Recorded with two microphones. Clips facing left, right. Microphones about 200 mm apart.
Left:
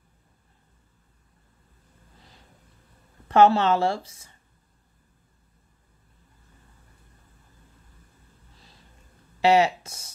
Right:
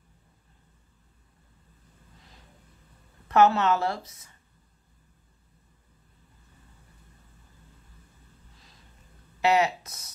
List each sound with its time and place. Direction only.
3.3 s speech: 30° left (ahead or behind)
9.4 s speech: 30° left (ahead or behind)